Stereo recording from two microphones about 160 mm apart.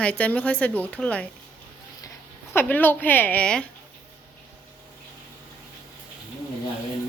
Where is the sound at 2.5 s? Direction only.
10° left (ahead or behind).